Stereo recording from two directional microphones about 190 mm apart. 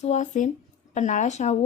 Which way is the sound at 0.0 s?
40° left (ahead or behind).